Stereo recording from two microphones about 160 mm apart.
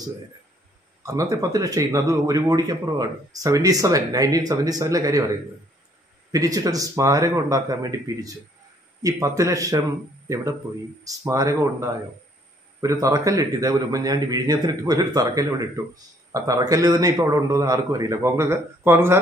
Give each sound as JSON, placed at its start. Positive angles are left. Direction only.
{"t": 1.0, "sound": "speech", "side_deg": -20}
{"t": 6.3, "sound": "speech", "side_deg": -20}